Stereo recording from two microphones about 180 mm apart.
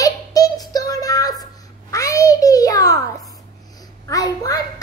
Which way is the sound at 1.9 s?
20° left (ahead or behind).